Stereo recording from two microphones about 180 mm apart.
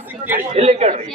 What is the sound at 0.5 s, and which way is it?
Speech, 35° right (ahead or behind).